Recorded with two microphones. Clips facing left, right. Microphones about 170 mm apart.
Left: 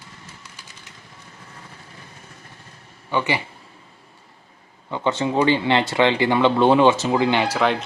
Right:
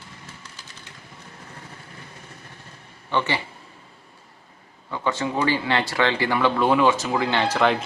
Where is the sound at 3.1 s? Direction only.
15° left (ahead or behind).